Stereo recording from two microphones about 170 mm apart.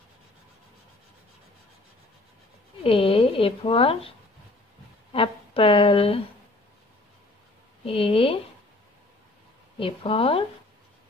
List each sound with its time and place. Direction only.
2.8 s speech: 35° left (ahead or behind)
5.1 s speech: 35° left (ahead or behind)
7.8 s speech: 35° left (ahead or behind)
9.8 s speech: 35° left (ahead or behind)